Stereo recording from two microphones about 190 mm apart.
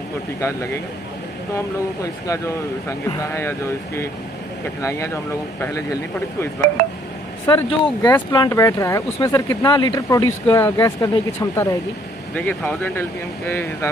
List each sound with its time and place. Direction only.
0.4 s speech: 15° left (ahead or behind)
2.2 s speech: 15° left (ahead or behind)
7.4 s speech: 25° left (ahead or behind)